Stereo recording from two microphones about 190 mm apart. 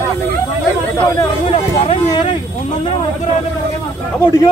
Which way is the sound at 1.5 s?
30° left (ahead or behind).